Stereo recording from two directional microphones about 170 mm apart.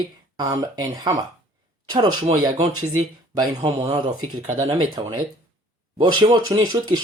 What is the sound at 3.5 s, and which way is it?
Speech, 40° right (ahead or behind).